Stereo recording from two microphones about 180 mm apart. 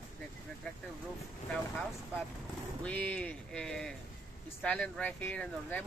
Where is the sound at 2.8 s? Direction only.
10° left (ahead or behind).